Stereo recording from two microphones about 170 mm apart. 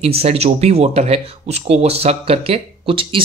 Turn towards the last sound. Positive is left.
turn(degrees=-30)  # may be behind; listen again after turning